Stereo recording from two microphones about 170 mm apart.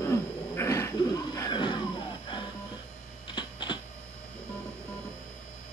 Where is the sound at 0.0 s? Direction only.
15° left (ahead or behind).